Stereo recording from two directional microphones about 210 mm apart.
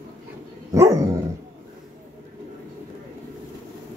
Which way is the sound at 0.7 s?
15° right (ahead or behind).